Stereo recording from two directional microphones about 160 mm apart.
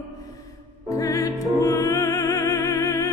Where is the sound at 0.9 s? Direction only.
20° left (ahead or behind).